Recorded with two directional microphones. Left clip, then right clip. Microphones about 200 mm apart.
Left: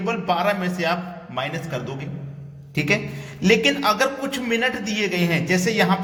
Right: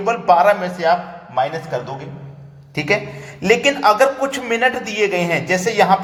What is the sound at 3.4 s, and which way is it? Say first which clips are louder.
Speech: right 3 dB; 20° left (ahead or behind).